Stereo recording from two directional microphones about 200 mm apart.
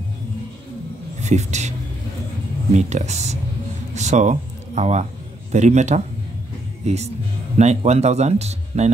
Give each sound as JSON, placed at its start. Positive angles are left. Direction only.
{"t": 1.2, "sound": "speech", "side_deg": -35}
{"t": 2.7, "sound": "speech", "side_deg": -35}
{"t": 6.8, "sound": "music", "side_deg": -35}
{"t": 7.5, "sound": "speech", "side_deg": -35}